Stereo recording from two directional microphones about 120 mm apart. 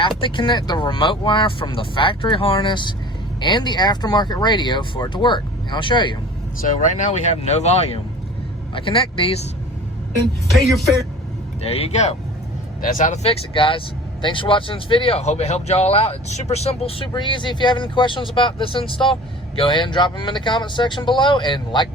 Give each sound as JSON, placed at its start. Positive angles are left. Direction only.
{"t": 0.2, "sound": "speech", "side_deg": 40}
{"t": 6.7, "sound": "speech", "side_deg": 90}
{"t": 8.7, "sound": "speech", "side_deg": 45}
{"t": 10.5, "sound": "speech", "side_deg": 0}
{"t": 11.6, "sound": "speech", "side_deg": 60}
{"t": 13.0, "sound": "speech", "side_deg": 90}
{"t": 13.5, "sound": "speech", "side_deg": 45}